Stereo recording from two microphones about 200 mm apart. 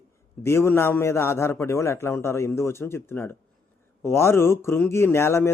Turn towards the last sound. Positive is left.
turn(degrees=10)  # may be behind; listen again after turning